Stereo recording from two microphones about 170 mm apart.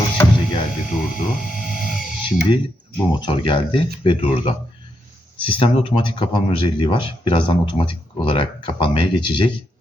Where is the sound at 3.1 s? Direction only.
30° left (ahead or behind).